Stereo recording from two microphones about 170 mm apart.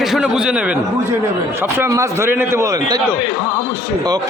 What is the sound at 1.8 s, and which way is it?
A man's voice, 15° right (ahead or behind).